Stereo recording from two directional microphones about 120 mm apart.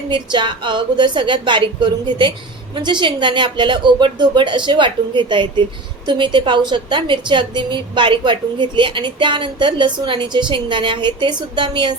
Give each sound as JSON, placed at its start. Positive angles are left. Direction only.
{"t": 0.1, "sound": "a woman's voice", "side_deg": -40}